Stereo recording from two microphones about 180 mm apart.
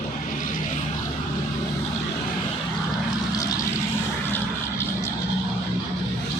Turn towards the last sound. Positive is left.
turn(degrees=15)  # may be behind; listen again after turning